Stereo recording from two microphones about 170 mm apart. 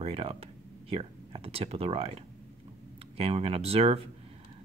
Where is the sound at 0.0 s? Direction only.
35° right (ahead or behind).